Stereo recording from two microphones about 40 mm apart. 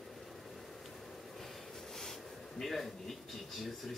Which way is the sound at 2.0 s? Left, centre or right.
Centre.